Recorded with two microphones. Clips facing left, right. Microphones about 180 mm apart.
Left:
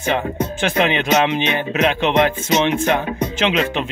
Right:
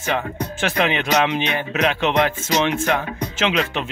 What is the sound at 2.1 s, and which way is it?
Speech, 20° left (ahead or behind).